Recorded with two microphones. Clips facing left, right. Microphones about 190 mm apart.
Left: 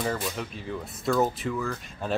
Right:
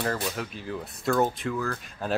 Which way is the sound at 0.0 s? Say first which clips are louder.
Even; centre (ahead or behind).